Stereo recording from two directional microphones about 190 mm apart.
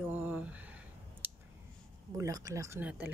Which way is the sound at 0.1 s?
10° right (ahead or behind).